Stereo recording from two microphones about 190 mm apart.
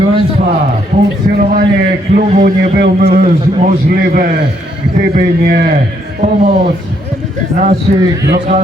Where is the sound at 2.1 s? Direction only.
45° right (ahead or behind).